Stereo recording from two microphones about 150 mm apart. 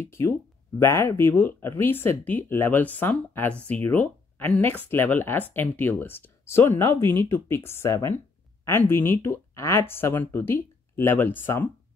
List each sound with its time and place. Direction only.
0.0 s speech: 15° left (ahead or behind)